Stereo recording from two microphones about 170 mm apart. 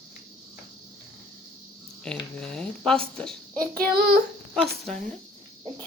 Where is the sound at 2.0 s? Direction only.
5° left (ahead or behind).